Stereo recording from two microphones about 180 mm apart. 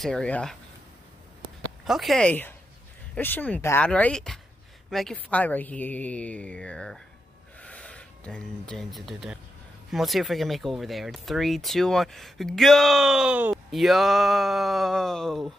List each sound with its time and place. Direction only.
0.0 s speech: 5° left (ahead or behind)
1.9 s a woman's voice: centre (ahead or behind)